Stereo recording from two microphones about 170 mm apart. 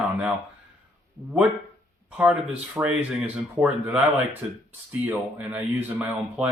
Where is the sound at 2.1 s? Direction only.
5° right (ahead or behind).